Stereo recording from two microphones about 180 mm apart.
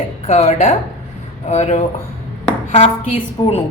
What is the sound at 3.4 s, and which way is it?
Speech, 25° left (ahead or behind).